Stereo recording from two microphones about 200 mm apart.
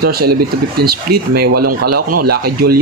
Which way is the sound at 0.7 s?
50° right (ahead or behind).